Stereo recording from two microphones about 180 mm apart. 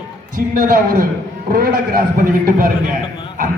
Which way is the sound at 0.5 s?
50° right (ahead or behind).